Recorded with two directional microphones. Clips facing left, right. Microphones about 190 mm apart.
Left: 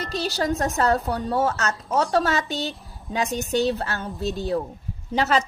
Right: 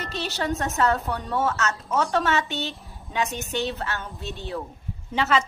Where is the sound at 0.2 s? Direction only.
35° left (ahead or behind).